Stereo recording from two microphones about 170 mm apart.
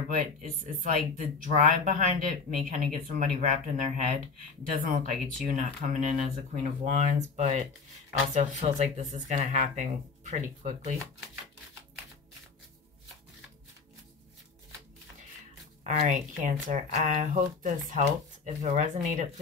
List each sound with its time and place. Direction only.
0.2 s speech: 50° right (ahead or behind)
15.8 s speech: 40° right (ahead or behind)